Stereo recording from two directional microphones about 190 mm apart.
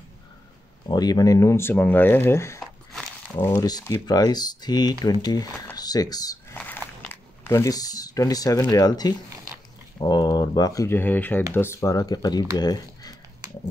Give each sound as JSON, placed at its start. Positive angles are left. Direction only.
{"t": 0.8, "sound": "speech", "side_deg": 20}
{"t": 2.6, "sound": "a sound", "side_deg": 0}
{"t": 3.6, "sound": "speech", "side_deg": 15}
{"t": 6.6, "sound": "speech", "side_deg": 10}